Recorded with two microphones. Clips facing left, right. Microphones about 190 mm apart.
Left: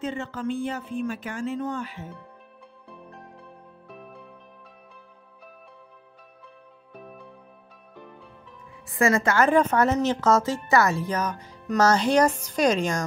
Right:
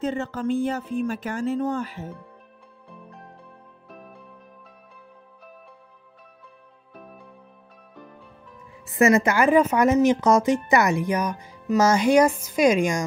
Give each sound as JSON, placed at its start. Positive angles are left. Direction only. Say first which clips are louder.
{"t": 0.0, "sound": "speech", "louder": "right 4 dB", "side_deg": -40}
{"t": 8.8, "sound": "a woman's voice", "louder": "right 4 dB", "side_deg": -20}